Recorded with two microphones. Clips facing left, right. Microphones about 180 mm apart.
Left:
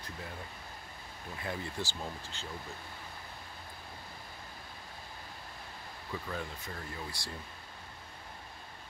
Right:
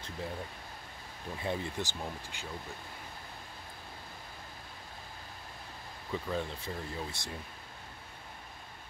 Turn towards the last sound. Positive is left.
turn(degrees=-25)  # may be behind; listen again after turning